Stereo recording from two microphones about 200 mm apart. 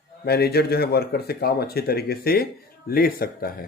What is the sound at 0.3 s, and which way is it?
Speech, 50° left (ahead or behind).